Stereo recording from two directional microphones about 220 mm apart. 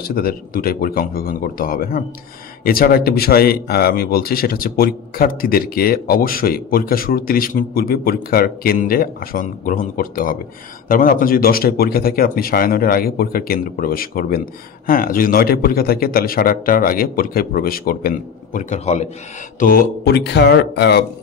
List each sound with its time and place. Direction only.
0.0 s speech: 40° left (ahead or behind)